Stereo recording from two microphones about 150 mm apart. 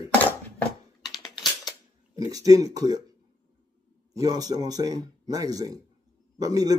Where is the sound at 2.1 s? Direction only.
25° right (ahead or behind).